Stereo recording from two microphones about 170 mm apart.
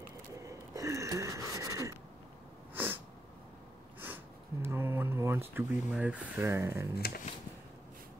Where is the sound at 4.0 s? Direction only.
15° right (ahead or behind).